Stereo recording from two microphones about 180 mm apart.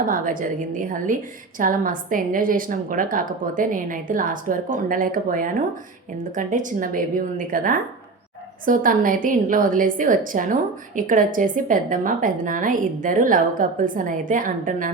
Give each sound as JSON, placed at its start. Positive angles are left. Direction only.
{"t": 0.0, "sound": "a woman's voice", "side_deg": -50}